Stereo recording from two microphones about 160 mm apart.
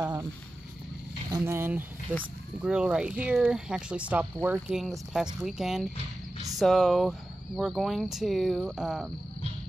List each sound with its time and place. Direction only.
0.0 s speech: 20° right (ahead or behind)
1.3 s speech: 15° right (ahead or behind)